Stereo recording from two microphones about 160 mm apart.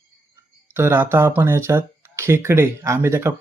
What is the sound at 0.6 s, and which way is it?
Speech, 15° right (ahead or behind).